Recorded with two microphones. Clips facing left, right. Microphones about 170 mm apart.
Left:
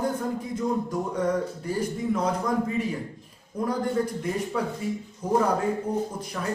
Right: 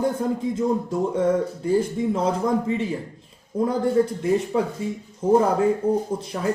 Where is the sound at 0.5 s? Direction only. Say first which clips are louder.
Right 4 dB; 25° right (ahead or behind).